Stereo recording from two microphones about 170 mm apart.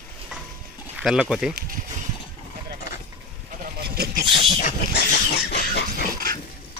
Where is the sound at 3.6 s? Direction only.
70° right (ahead or behind).